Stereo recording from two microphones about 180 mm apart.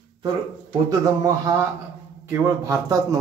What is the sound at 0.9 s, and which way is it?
A man's voice, 20° right (ahead or behind).